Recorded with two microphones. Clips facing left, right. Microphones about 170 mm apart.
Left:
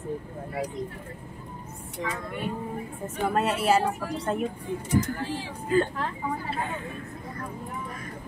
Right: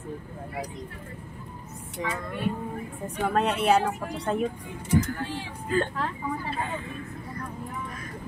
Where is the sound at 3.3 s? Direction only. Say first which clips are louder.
Right 1 dB; 5° left (ahead or behind).